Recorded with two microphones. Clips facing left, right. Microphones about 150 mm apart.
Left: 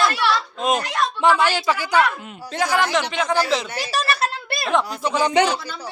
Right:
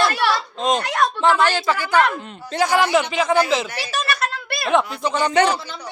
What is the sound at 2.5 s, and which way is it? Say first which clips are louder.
Speech: right 3 dB; centre (ahead or behind).